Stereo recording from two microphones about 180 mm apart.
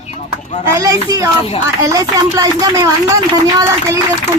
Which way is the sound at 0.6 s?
15° right (ahead or behind).